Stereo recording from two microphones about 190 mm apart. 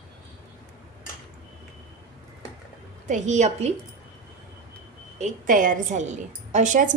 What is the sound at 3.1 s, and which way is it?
Speech, 40° right (ahead or behind).